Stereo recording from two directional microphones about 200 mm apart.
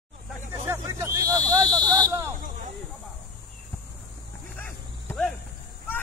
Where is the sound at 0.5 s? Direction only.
15° right (ahead or behind).